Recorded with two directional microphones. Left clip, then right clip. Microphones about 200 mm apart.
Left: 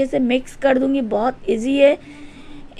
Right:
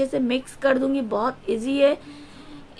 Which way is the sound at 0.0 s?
10° left (ahead or behind).